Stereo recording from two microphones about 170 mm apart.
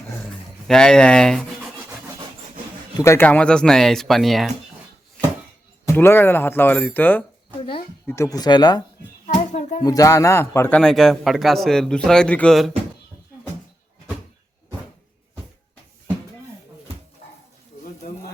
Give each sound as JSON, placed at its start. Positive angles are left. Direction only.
{"t": 0.7, "sound": "rub", "side_deg": 5}
{"t": 3.0, "sound": "speech", "side_deg": 15}
{"t": 5.9, "sound": "speech", "side_deg": 15}
{"t": 7.6, "sound": "a sound", "side_deg": 35}
{"t": 8.0, "sound": "speech", "side_deg": 15}
{"t": 9.2, "sound": "a sound", "side_deg": 45}
{"t": 9.8, "sound": "speech", "side_deg": 20}